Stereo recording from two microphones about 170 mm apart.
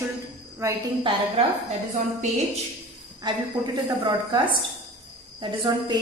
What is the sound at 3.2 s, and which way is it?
A woman's voice, 25° right (ahead or behind).